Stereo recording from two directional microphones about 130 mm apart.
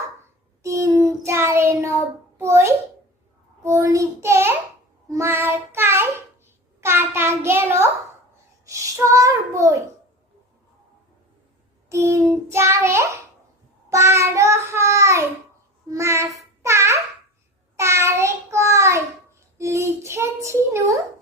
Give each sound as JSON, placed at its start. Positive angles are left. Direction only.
{"t": 0.6, "sound": "child singing", "side_deg": -25}
{"t": 2.4, "sound": "a child's voice", "side_deg": -20}
{"t": 3.6, "sound": "child singing", "side_deg": -25}
{"t": 6.8, "sound": "a sound", "side_deg": -20}
{"t": 8.6, "sound": "a child's voice", "side_deg": -25}
{"t": 11.9, "sound": "child singing", "side_deg": -20}
{"t": 16.6, "sound": "babbling", "side_deg": -20}
{"t": 17.7, "sound": "child singing", "side_deg": -20}
{"t": 19.5, "sound": "a child's voice", "side_deg": -25}